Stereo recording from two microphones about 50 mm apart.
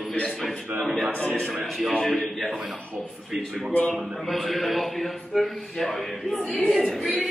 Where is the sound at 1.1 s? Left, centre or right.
Left.